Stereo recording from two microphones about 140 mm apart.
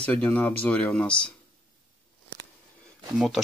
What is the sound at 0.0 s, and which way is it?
Speech, 10° left (ahead or behind).